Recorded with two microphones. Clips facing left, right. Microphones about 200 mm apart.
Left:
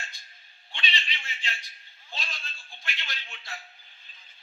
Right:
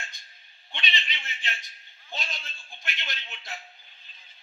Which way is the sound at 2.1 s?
20° right (ahead or behind).